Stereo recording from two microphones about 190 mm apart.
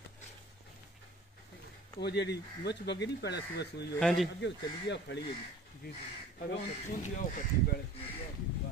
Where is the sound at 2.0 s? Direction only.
65° left (ahead or behind).